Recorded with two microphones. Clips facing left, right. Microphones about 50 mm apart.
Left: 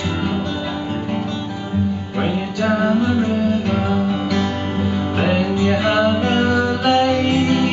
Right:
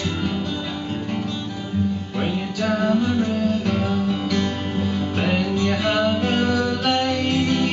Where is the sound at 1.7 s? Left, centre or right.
Centre.